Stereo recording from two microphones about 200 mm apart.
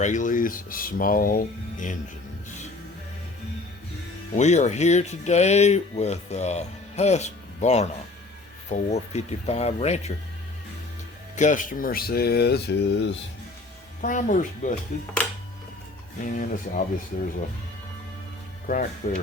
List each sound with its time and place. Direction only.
0.0 s speech: 40° left (ahead or behind)
4.4 s speech: 35° left (ahead or behind)
11.3 s speech: 40° left (ahead or behind); by 13.1 s 55° left (ahead or behind)
14.0 s speech: 40° left (ahead or behind)
16.2 s speech: 45° left (ahead or behind)
19.0 s speech: 45° left (ahead or behind)